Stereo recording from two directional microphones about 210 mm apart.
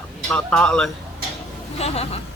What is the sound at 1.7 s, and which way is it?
Speech, 30° left (ahead or behind).